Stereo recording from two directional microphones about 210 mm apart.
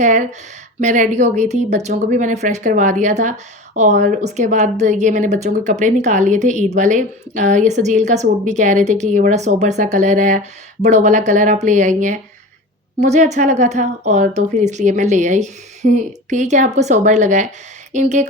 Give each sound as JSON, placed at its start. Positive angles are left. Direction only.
{"t": 0.0, "sound": "speech", "side_deg": -35}